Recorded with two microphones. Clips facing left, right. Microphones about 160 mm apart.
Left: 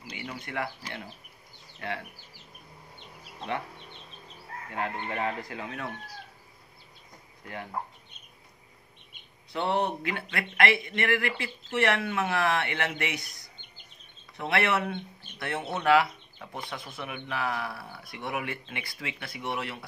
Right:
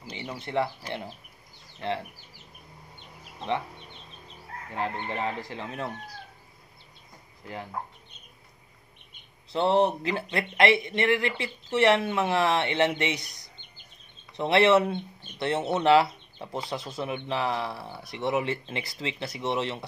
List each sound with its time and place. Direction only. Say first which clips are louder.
0.0 s speech: right 2 dB; 25° right (ahead or behind)
4.7 s speech: right 1 dB; 30° right (ahead or behind)
9.5 s speech: right 5 dB; 30° right (ahead or behind)
14.3 s speech: right 7 dB; 25° right (ahead or behind)